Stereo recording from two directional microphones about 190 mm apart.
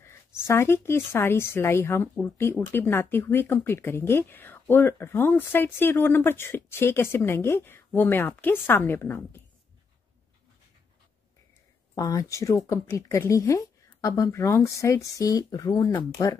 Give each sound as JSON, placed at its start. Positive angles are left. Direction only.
{"t": 0.0, "sound": "speech", "side_deg": 15}
{"t": 11.9, "sound": "speech", "side_deg": 20}